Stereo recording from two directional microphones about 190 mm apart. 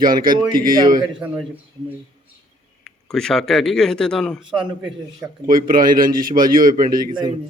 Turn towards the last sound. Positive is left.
turn(degrees=-25)  # may be behind; listen again after turning